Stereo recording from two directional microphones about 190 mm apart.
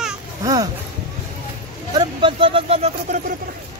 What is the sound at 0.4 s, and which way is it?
Music, 20° right (ahead or behind).